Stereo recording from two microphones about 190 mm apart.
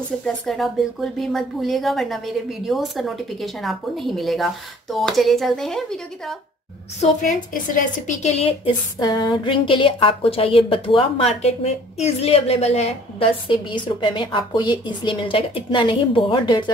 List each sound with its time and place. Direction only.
0.2 s speech: 5° left (ahead or behind)
7.0 s a woman's voice: 40° left (ahead or behind); by 16.7 s 25° left (ahead or behind)